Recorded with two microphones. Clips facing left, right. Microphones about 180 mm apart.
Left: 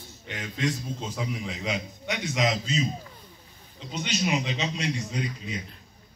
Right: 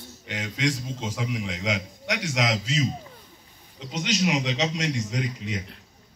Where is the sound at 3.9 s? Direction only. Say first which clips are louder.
Right 2 dB; 90° right.